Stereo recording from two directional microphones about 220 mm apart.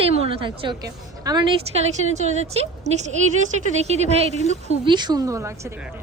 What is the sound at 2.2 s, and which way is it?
A woman's voice, 30° right (ahead or behind).